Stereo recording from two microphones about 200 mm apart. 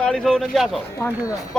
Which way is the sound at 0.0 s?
5° left (ahead or behind).